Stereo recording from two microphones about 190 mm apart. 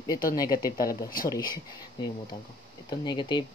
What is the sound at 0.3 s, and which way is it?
Speech, 20° left (ahead or behind).